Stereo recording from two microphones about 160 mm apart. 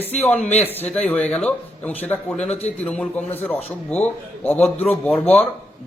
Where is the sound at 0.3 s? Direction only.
45° left (ahead or behind).